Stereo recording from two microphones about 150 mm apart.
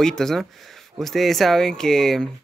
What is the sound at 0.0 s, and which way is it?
Speech, 5° left (ahead or behind).